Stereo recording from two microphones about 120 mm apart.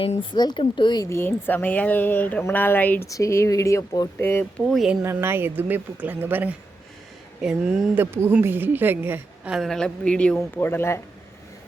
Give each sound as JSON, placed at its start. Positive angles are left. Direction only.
{"t": 0.0, "sound": "speech", "side_deg": 50}
{"t": 0.3, "sound": "speech", "side_deg": 35}
{"t": 1.1, "sound": "speech", "side_deg": 20}
{"t": 3.1, "sound": "speech", "side_deg": 25}
{"t": 4.6, "sound": "speech", "side_deg": 0}
{"t": 5.1, "sound": "a woman's voice", "side_deg": -20}
{"t": 7.9, "sound": "a woman's voice", "side_deg": -20}
{"t": 9.6, "sound": "speech", "side_deg": 5}
{"t": 10.3, "sound": "speech", "side_deg": 20}